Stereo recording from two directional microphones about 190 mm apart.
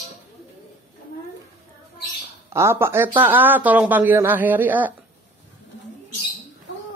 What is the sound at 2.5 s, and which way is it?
Speech, 15° right (ahead or behind).